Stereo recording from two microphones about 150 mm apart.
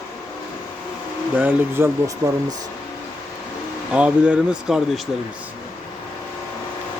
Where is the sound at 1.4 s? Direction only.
15° right (ahead or behind).